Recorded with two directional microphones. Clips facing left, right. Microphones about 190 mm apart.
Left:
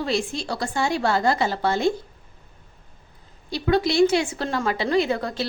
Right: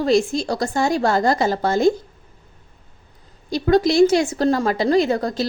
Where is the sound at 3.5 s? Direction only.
40° right (ahead or behind).